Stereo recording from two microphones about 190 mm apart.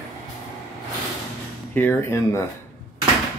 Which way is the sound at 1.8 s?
10° left (ahead or behind).